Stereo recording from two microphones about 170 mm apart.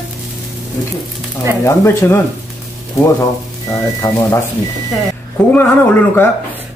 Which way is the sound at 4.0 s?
20° left (ahead or behind).